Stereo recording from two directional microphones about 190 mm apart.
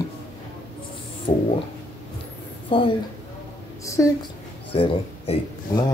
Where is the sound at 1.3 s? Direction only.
45° left (ahead or behind).